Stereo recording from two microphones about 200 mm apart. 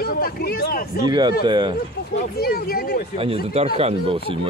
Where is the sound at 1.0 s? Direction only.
20° right (ahead or behind).